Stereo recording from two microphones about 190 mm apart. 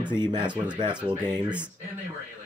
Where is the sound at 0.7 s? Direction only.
25° right (ahead or behind).